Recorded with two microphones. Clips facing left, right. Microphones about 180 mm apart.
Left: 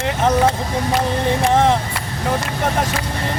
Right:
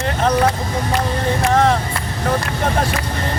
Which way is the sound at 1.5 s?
20° left (ahead or behind).